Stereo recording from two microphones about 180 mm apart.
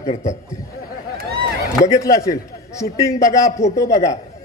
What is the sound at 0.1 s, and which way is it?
Speech, 40° left (ahead or behind).